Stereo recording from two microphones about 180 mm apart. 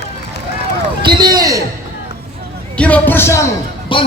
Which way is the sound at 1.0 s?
25° right (ahead or behind).